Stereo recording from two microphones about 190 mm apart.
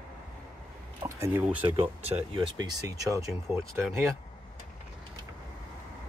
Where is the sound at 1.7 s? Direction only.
25° right (ahead or behind).